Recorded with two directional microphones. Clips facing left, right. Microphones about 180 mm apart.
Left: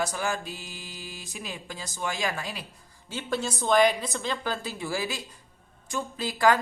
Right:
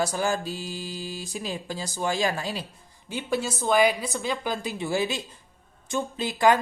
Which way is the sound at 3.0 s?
10° right (ahead or behind).